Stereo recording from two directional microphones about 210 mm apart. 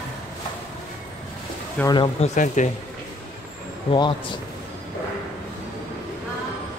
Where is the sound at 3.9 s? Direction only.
25° left (ahead or behind).